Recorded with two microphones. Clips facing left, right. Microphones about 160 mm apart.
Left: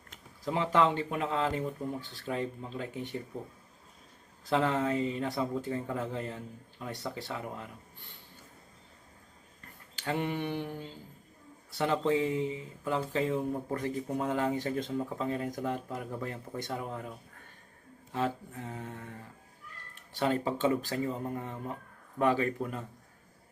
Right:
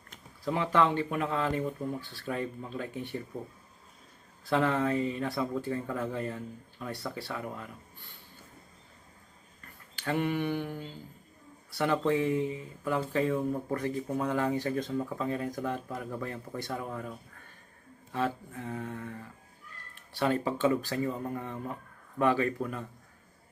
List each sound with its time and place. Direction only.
0.4 s speech: 20° left (ahead or behind)
4.4 s speech: 20° left (ahead or behind)
9.9 s speech: 20° left (ahead or behind)